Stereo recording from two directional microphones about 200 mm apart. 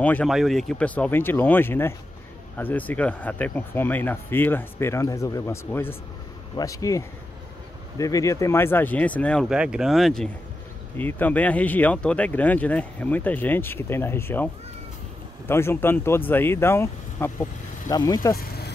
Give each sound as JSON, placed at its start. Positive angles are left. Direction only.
{"t": 0.0, "sound": "speech", "side_deg": 5}